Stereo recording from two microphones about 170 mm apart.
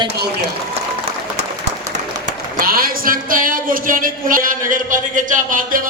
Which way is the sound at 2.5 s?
60° right (ahead or behind).